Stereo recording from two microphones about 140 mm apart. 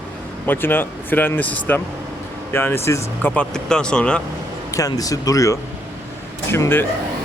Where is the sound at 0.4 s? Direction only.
15° left (ahead or behind).